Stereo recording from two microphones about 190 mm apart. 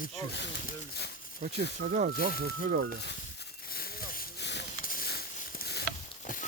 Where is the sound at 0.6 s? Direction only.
60° left (ahead or behind).